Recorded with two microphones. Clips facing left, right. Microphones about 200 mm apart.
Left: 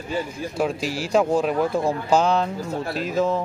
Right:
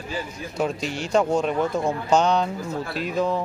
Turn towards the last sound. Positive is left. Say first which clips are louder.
# left 2 dB
turn(degrees=0)  # may be behind; listen again after turning